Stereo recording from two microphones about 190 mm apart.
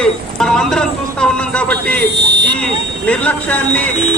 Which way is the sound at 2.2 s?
60° right (ahead or behind).